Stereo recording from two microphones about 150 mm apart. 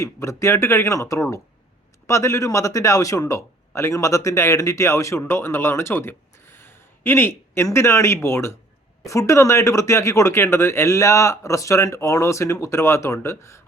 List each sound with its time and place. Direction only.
0.0 s speech: 20° left (ahead or behind)